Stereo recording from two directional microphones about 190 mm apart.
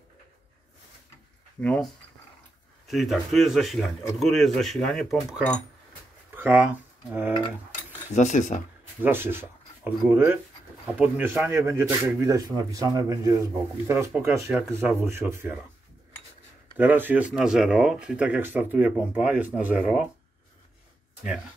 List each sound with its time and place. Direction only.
1.6 s speech: 5° left (ahead or behind)
2.9 s speech: centre (ahead or behind)
6.3 s speech: 10° right (ahead or behind)
8.1 s speech: 40° left (ahead or behind)
9.0 s speech: 10° right (ahead or behind)
16.7 s speech: 10° right (ahead or behind)